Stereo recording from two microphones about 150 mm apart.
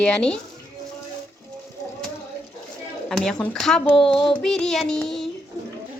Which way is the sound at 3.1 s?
5° left (ahead or behind).